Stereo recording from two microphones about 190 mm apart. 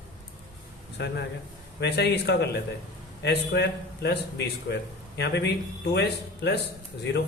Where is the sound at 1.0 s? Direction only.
65° left (ahead or behind).